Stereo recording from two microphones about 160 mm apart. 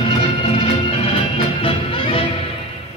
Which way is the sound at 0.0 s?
35° left (ahead or behind).